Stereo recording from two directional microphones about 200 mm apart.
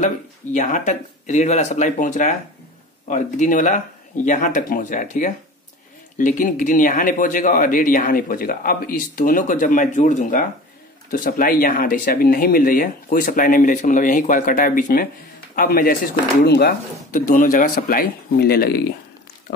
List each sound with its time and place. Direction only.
0.0 s speech: 40° left (ahead or behind)